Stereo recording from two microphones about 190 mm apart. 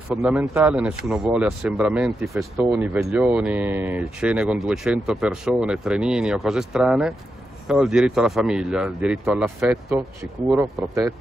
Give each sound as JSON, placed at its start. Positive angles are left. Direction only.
{"t": 0.1, "sound": "speech", "side_deg": 0}